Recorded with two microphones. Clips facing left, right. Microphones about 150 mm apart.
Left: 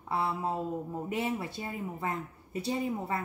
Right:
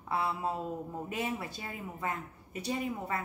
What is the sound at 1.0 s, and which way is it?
Speech, 25° left (ahead or behind).